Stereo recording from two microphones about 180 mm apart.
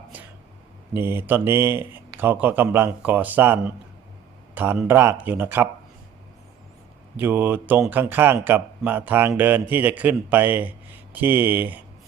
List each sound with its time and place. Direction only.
0.9 s a man's voice: 10° right (ahead or behind)
7.2 s speech: 10° right (ahead or behind)